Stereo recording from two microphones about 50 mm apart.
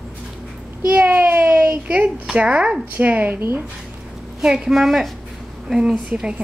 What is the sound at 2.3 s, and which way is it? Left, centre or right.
Speech, right.